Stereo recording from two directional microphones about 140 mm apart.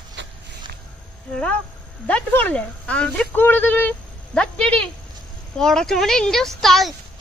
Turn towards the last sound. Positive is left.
turn(degrees=0)  # may be behind; listen again after turning